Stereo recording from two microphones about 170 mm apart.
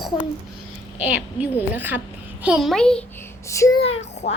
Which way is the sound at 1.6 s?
10° right (ahead or behind).